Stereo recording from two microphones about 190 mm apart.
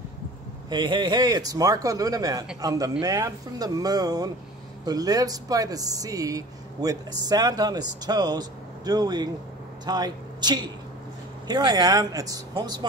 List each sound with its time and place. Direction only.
0.7 s speech: 25° right (ahead or behind)